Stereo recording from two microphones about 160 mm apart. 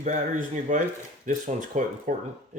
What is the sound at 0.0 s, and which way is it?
Speech, 50° right (ahead or behind).